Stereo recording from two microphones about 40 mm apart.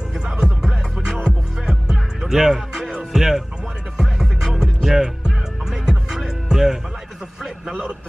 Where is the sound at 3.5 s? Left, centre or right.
Centre.